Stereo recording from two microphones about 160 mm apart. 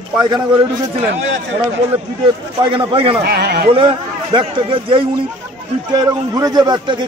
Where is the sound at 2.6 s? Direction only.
30° right (ahead or behind).